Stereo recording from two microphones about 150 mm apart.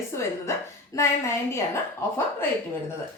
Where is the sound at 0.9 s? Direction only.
20° left (ahead or behind).